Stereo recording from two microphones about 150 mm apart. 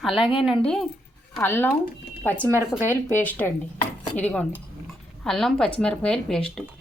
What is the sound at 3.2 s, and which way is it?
A woman's voice, 10° left (ahead or behind).